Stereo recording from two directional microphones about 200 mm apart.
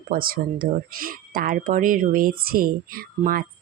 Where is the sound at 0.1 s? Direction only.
45° right (ahead or behind).